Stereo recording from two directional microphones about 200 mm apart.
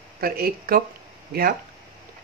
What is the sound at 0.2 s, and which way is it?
Speech, 45° right (ahead or behind).